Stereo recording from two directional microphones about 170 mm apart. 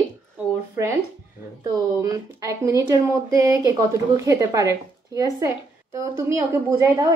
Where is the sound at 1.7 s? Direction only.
20° right (ahead or behind).